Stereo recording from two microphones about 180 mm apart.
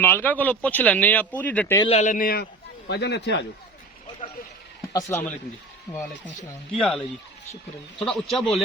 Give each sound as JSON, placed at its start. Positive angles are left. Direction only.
{"t": 0.0, "sound": "speech", "side_deg": 10}
{"t": 1.8, "sound": "a man's voice", "side_deg": 35}
{"t": 4.9, "sound": "speech", "side_deg": 15}
{"t": 6.7, "sound": "speech", "side_deg": 5}